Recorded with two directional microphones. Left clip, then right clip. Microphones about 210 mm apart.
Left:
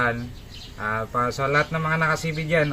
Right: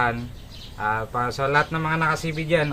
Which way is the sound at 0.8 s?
20° right (ahead or behind).